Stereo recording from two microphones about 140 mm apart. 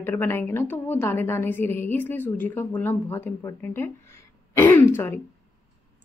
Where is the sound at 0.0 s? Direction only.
15° left (ahead or behind).